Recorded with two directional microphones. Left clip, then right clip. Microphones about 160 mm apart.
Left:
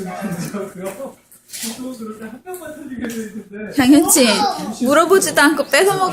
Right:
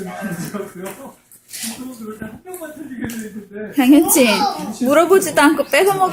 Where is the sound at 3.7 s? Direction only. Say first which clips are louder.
Even; 20° right (ahead or behind).